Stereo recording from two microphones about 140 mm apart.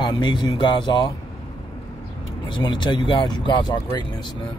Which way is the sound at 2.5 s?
35° left (ahead or behind).